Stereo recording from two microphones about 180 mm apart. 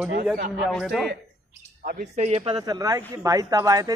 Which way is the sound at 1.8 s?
60° right (ahead or behind).